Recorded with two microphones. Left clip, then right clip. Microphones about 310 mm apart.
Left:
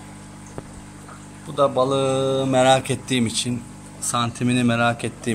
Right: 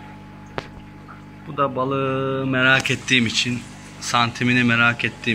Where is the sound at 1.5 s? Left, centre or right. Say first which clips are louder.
Left 3 dB; centre.